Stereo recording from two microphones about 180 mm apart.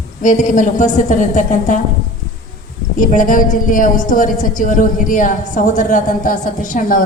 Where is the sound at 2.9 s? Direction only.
45° left (ahead or behind).